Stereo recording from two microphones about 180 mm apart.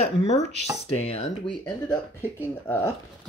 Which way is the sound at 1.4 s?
10° left (ahead or behind).